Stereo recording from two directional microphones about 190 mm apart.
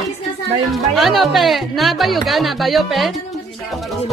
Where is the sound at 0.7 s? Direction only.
Centre (ahead or behind).